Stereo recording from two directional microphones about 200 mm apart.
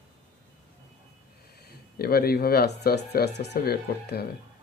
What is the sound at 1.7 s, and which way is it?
Speech, 50° left (ahead or behind).